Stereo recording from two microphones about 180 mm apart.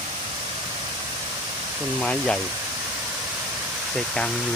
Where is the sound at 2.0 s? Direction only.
5° left (ahead or behind).